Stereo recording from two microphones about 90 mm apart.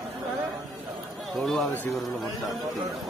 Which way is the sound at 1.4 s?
Centre (ahead or behind).